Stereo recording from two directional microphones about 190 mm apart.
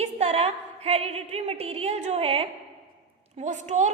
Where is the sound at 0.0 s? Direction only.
35° right (ahead or behind).